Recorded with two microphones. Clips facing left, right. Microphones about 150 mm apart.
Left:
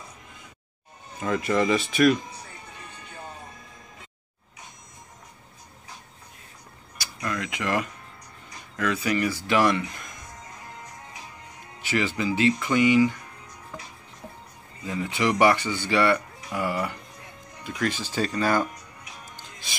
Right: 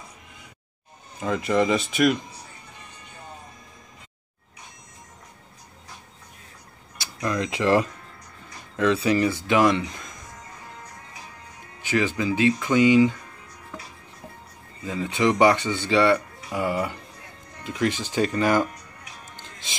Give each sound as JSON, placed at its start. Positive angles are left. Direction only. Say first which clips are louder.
{"t": 1.2, "sound": "speech", "louder": "right 1 dB", "side_deg": -20}
{"t": 7.0, "sound": "speech", "louder": "right 5 dB", "side_deg": -25}
{"t": 11.8, "sound": "speech", "louder": "right 2 dB", "side_deg": -15}
{"t": 15.0, "sound": "speech", "louder": "right 2 dB", "side_deg": -20}